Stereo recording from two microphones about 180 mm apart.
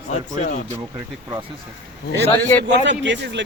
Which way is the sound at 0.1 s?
40° left (ahead or behind).